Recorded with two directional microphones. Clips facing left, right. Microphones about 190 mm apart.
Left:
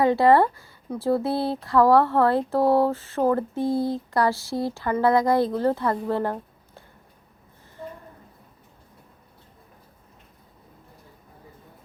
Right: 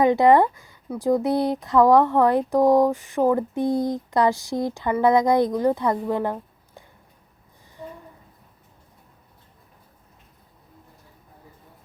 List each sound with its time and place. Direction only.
0.0 s speech: 20° right (ahead or behind)